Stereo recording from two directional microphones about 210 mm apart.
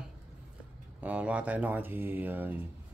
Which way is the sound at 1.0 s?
5° right (ahead or behind).